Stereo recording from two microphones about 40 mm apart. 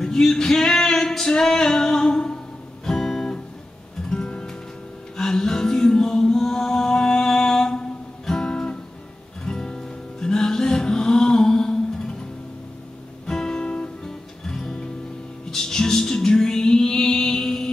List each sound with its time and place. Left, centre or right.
0.0 s male singing: centre
2.8 s guitar: centre
4.1 s music: left
5.1 s music: centre
13.3 s music: centre
14.0 s music: centre